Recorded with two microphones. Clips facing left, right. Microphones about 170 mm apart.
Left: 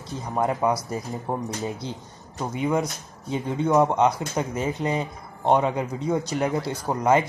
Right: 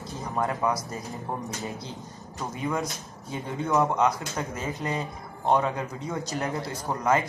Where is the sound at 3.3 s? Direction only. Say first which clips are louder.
Left 5 dB; 20° left (ahead or behind).